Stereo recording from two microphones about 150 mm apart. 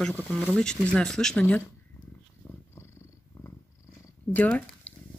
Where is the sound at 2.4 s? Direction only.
10° left (ahead or behind).